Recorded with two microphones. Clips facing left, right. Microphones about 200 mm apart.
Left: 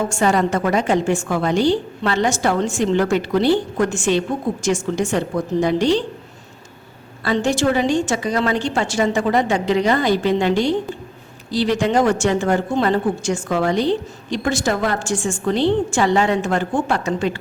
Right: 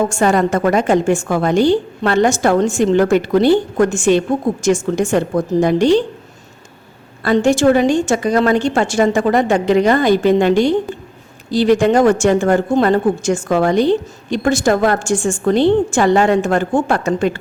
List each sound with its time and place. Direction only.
0.1 s speech: 50° right (ahead or behind)
7.3 s speech: 50° right (ahead or behind)